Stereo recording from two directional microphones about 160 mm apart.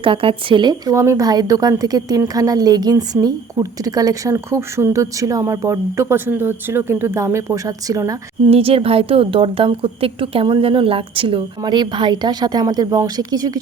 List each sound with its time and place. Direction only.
0.0 s speech: 35° right (ahead or behind)
8.4 s a woman's voice: 35° right (ahead or behind)